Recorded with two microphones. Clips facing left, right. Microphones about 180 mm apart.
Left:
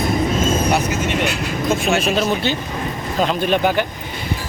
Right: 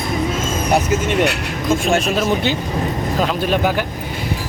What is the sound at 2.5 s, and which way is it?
Speech, 15° right (ahead or behind).